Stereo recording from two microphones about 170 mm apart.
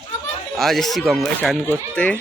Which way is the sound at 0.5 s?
Centre (ahead or behind).